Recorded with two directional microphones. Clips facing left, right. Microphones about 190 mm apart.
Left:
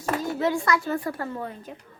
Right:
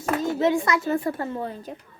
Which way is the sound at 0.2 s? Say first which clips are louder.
Right 4 dB; 20° right (ahead or behind).